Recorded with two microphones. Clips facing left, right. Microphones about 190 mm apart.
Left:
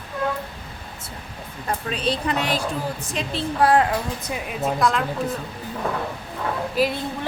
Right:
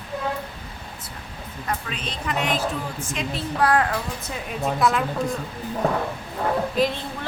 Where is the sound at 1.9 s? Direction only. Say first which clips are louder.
Left 6 dB; 35° left (ahead or behind).